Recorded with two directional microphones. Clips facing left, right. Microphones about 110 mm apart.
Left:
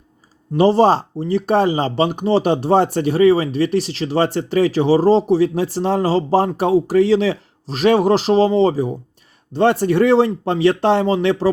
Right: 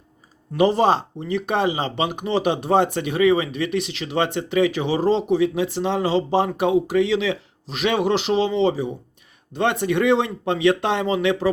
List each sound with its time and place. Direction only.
0.5 s speech: 30° left (ahead or behind)